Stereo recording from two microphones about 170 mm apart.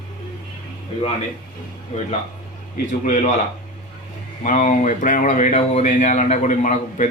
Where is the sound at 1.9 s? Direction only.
45° left (ahead or behind).